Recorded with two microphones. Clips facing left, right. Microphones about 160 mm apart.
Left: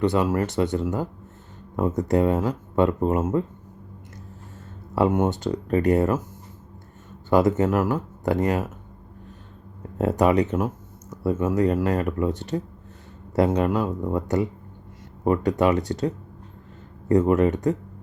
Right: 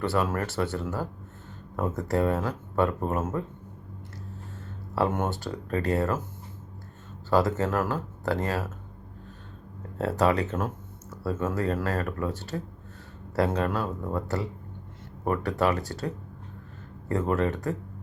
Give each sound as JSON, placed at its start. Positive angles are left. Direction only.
{"t": 0.0, "sound": "speech", "side_deg": 20}
{"t": 4.9, "sound": "speech", "side_deg": 15}
{"t": 7.3, "sound": "speech", "side_deg": 20}
{"t": 10.0, "sound": "speech", "side_deg": 15}